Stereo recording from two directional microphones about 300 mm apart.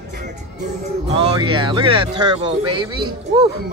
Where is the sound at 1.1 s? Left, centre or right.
Centre.